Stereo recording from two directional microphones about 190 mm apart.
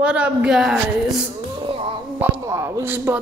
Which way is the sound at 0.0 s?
5° right (ahead or behind).